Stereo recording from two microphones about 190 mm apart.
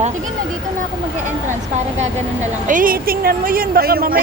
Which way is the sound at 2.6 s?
45° right (ahead or behind).